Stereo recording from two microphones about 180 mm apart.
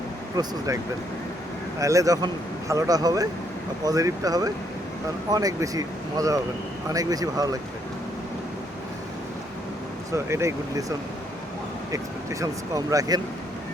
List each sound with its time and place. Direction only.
0.4 s speech: 20° right (ahead or behind)
1.8 s speech: 20° right (ahead or behind)
10.1 s speech: 15° right (ahead or behind)